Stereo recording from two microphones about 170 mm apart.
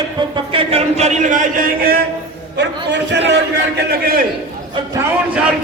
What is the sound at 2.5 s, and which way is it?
A man's voice, 90° right.